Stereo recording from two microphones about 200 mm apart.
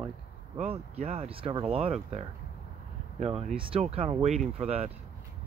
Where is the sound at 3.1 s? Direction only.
35° right (ahead or behind).